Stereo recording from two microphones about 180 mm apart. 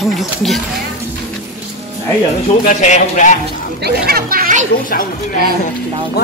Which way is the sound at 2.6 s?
45° left (ahead or behind).